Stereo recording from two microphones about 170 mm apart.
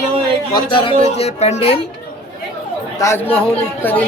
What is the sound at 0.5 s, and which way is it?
Speech, 30° left (ahead or behind).